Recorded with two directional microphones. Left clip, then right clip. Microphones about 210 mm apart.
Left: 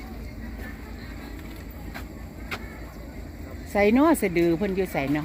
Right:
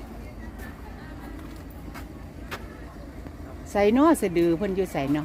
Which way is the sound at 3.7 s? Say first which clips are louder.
Even; 10° right (ahead or behind).